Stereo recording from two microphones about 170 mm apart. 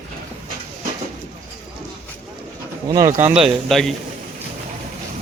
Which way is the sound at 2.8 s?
20° right (ahead or behind).